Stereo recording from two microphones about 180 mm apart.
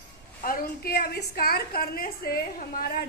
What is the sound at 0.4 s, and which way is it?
A woman's voice, 55° left (ahead or behind).